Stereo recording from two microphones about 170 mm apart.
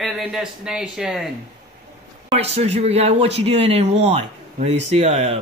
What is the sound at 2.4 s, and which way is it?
Speech, 40° right (ahead or behind).